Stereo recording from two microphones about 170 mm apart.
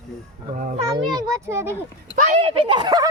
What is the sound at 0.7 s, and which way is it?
A child's voice, 30° right (ahead or behind).